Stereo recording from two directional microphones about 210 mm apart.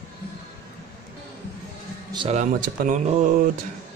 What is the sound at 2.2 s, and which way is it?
Speech, 35° right (ahead or behind).